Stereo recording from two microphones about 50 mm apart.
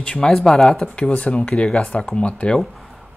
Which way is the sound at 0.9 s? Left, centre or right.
Left.